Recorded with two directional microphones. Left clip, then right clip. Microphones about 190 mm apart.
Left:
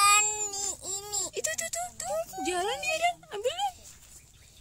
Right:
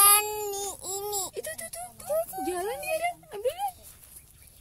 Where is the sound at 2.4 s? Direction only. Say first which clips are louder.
Left 1 dB; centre (ahead or behind).